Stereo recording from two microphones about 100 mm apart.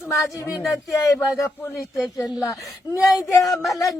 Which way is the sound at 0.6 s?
Centre (ahead or behind).